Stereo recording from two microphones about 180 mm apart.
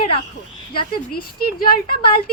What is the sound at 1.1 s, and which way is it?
Speech, 55° left (ahead or behind).